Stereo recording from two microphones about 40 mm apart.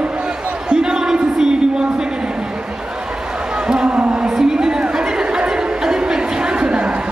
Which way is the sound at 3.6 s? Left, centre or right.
Right.